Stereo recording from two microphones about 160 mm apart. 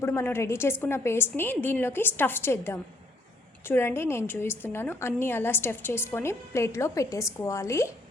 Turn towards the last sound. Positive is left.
turn(degrees=20)  # may be behind; listen again after turning